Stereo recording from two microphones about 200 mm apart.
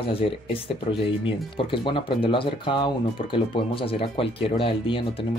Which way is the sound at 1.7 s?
25° left (ahead or behind).